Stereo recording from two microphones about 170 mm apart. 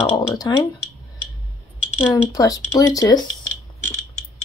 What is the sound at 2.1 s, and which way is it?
Speech, 20° left (ahead or behind).